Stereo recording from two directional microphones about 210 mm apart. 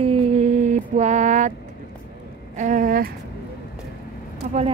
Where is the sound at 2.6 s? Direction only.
40° right (ahead or behind).